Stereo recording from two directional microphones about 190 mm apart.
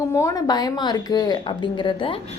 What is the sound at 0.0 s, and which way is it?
A woman's voice, 15° left (ahead or behind).